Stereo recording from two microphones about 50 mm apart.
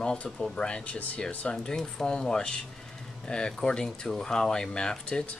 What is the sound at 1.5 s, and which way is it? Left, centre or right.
Speech, centre.